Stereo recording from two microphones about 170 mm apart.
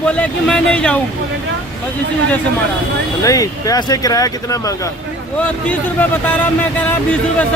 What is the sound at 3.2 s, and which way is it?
Speech, 20° left (ahead or behind).